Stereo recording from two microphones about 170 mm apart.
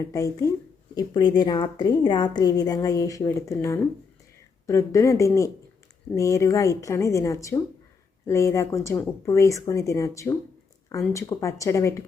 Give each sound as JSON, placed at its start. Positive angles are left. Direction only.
{"t": 0.0, "sound": "a woman's voice", "side_deg": 20}